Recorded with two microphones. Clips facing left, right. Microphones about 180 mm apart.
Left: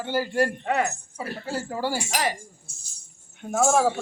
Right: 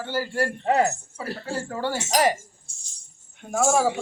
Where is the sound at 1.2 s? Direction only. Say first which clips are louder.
Even; 15° left (ahead or behind).